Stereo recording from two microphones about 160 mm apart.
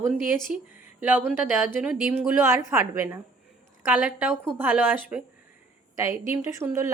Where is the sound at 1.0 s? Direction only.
10° right (ahead or behind).